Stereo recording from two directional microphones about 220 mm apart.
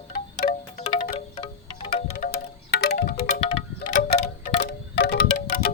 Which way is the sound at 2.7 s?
50° left (ahead or behind).